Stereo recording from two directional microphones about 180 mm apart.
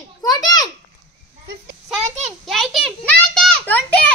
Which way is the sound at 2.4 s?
Centre (ahead or behind).